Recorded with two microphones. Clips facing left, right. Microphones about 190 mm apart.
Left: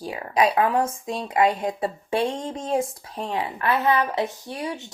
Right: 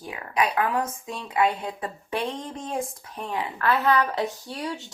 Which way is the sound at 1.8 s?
25° left (ahead or behind).